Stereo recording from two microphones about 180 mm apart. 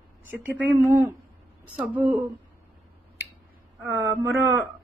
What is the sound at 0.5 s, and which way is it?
Speech, 10° right (ahead or behind).